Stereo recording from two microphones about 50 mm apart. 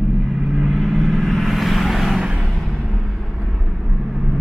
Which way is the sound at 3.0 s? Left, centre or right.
Centre.